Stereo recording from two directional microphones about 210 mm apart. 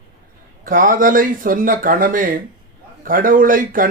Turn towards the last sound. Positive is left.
turn(degrees=-40)  # may be behind; listen again after turning